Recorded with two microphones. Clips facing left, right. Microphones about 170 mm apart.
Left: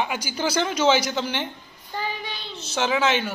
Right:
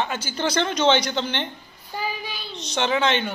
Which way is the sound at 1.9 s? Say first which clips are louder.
Even; 10° right (ahead or behind).